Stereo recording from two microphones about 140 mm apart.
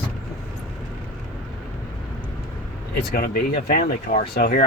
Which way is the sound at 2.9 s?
90° left.